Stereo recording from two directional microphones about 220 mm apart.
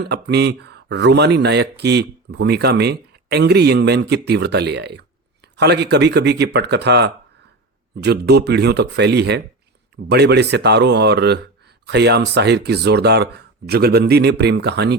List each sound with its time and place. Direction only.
0.0 s speech: 50° right (ahead or behind)